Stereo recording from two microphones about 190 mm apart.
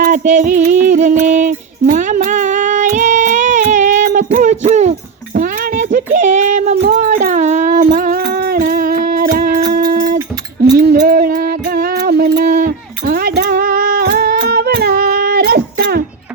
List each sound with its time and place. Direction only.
0.0 s music: 40° right (ahead or behind)
1.2 s female singing: 40° right (ahead or behind)
6.1 s a sound: 40° right (ahead or behind)
7.9 s music: 45° right (ahead or behind)
9.7 s a sound: 50° right (ahead or behind)
10.8 s music: 55° right (ahead or behind)